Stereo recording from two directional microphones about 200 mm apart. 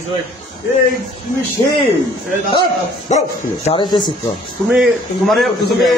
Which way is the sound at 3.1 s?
35° left (ahead or behind).